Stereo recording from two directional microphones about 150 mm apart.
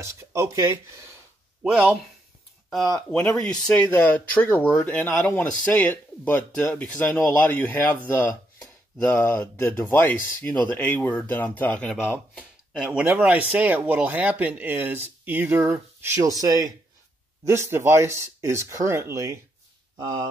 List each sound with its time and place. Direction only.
0.0 s speech: 20° right (ahead or behind)
1.6 s speech: 5° right (ahead or behind)
12.7 s speech: 5° right (ahead or behind)